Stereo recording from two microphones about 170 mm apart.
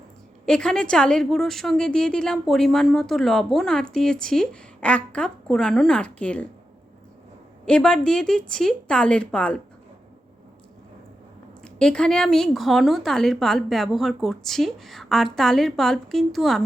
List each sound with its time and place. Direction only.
0.4 s a woman's voice: 5° left (ahead or behind)
7.6 s a woman's voice: 5° left (ahead or behind)
11.6 s a woman's voice: 5° left (ahead or behind)